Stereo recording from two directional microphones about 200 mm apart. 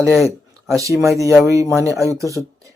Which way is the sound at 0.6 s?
15° right (ahead or behind).